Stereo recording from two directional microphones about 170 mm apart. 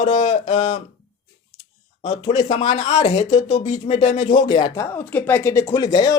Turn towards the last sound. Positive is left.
turn(degrees=20)  # may be behind; listen again after turning